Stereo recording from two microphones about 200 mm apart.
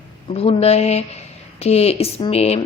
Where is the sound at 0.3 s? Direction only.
30° left (ahead or behind).